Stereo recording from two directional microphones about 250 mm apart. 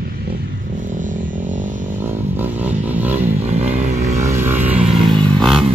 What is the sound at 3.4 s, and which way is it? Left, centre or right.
Motorcycle, right.